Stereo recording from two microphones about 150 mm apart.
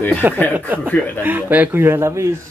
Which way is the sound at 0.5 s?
10° right (ahead or behind).